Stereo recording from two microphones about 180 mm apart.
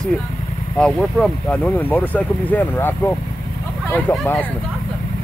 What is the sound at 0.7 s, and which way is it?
Speech, 5° left (ahead or behind).